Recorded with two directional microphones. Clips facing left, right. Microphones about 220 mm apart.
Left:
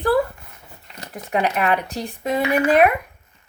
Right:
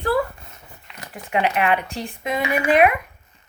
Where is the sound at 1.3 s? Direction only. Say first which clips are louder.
Even; 40° left (ahead or behind).